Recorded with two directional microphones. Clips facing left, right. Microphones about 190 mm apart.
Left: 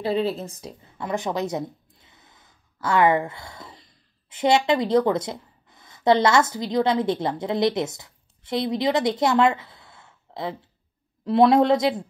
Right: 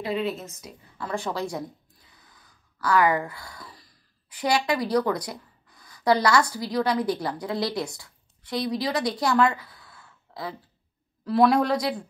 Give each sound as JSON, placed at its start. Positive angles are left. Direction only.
{"t": 0.0, "sound": "a woman's voice", "side_deg": 30}